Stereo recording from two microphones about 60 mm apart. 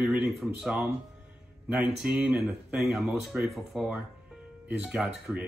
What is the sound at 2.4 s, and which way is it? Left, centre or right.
Speech, centre.